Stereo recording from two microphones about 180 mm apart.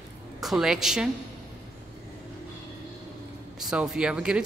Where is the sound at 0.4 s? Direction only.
Centre (ahead or behind).